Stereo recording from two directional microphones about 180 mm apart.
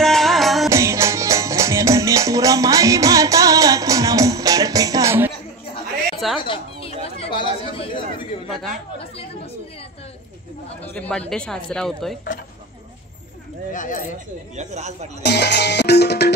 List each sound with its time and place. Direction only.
0.0 s music: centre (ahead or behind)
0.7 s music: 15° right (ahead or behind)
6.1 s music: centre (ahead or behind)
6.4 s chatter: 30° left (ahead or behind)
8.5 s speech: centre (ahead or behind)
10.8 s speech: 10° left (ahead or behind)
13.7 s speech: 45° left (ahead or behind)
14.5 s speech: 40° right (ahead or behind)
15.2 s music: 70° left (ahead or behind)